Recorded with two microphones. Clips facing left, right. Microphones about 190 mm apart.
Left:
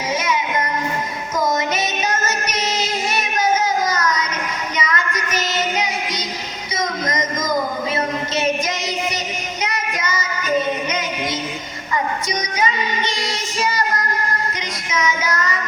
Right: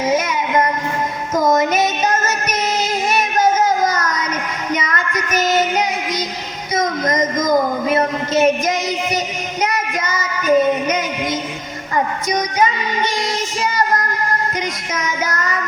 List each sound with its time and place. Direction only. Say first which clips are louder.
1.4 s music: right 5 dB; 50° right (ahead or behind)
4.7 s child singing: right 3 dB; 50° right (ahead or behind)
6.7 s a sound: right 5 dB; 55° right (ahead or behind)
9.6 s child singing: right 6 dB; 50° right (ahead or behind)
12.3 s child singing: right 7 dB; 50° right (ahead or behind)